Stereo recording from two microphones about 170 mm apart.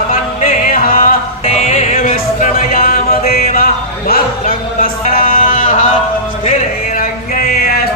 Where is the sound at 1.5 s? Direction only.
40° left (ahead or behind).